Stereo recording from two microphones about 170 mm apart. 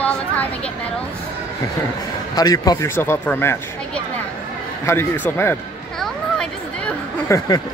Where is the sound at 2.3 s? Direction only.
20° left (ahead or behind).